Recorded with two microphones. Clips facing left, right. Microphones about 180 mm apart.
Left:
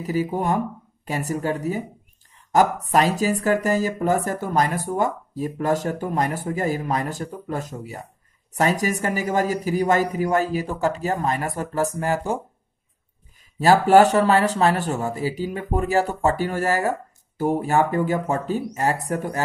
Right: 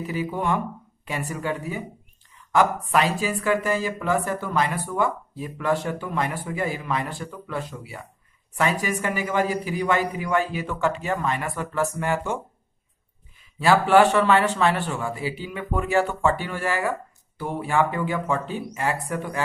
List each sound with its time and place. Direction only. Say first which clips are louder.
0.0 s speech: left 3 dB; 40° left (ahead or behind)
13.6 s speech: left 3 dB; 40° left (ahead or behind)